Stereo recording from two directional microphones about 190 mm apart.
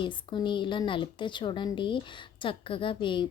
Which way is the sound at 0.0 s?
25° left (ahead or behind).